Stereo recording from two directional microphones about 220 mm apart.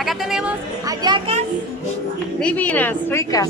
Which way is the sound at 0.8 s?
15° right (ahead or behind).